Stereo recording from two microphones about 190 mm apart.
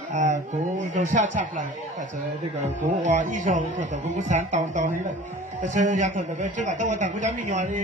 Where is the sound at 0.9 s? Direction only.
40° right (ahead or behind).